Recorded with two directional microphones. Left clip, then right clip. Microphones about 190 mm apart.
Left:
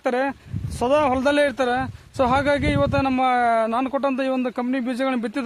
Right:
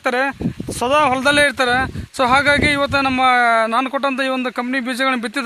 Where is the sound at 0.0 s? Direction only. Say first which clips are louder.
Right 4 dB; 10° right (ahead or behind).